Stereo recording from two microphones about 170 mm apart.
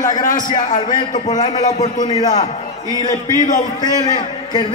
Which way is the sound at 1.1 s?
45° left (ahead or behind).